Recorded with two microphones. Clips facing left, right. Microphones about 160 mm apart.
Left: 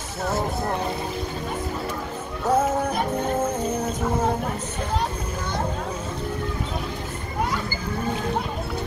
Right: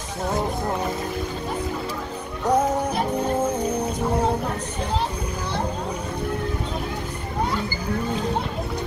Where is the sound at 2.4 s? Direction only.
Centre (ahead or behind).